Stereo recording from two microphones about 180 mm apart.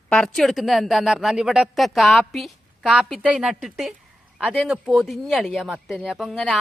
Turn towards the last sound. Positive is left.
turn(degrees=0)  # may be behind; listen again after turning